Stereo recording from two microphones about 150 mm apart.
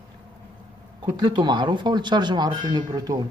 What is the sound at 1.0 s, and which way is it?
Speech, 30° right (ahead or behind).